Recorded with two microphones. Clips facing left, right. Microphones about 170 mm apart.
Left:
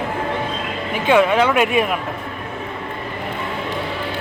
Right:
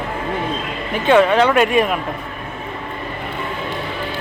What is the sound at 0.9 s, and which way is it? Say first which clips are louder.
Speech: right 2 dB; 10° left (ahead or behind).